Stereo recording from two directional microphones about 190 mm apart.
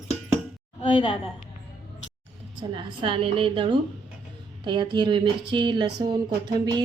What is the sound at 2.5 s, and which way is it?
A woman's voice, 25° right (ahead or behind).